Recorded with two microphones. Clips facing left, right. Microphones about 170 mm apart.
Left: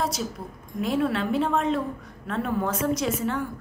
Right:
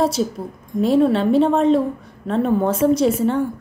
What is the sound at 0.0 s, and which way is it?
A woman's voice, 30° right (ahead or behind).